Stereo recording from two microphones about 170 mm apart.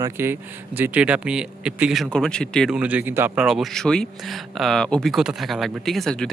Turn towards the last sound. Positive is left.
turn(degrees=5)  # may be behind; listen again after turning